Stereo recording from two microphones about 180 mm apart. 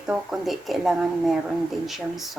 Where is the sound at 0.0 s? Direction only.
Centre (ahead or behind).